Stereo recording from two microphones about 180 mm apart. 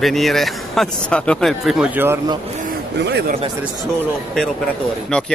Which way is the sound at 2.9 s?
70° right (ahead or behind).